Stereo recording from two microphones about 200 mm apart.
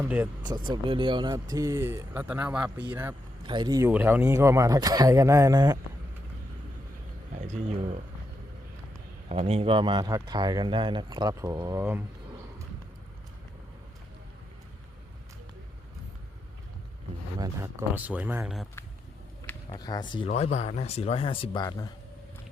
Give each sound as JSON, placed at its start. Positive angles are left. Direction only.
{"t": 0.0, "sound": "speech", "side_deg": -10}
{"t": 0.7, "sound": "speech", "side_deg": -25}
{"t": 3.4, "sound": "speech", "side_deg": -25}
{"t": 9.3, "sound": "speech", "side_deg": -30}
{"t": 17.4, "sound": "speech", "side_deg": -15}
{"t": 19.7, "sound": "speech", "side_deg": 20}